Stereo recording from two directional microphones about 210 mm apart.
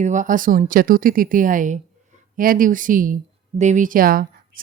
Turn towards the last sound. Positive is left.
turn(degrees=-45)  # may be behind; listen again after turning